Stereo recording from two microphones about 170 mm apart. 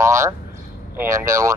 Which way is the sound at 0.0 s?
15° right (ahead or behind).